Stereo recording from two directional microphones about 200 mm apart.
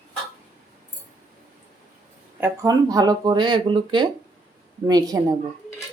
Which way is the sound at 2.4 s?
15° right (ahead or behind).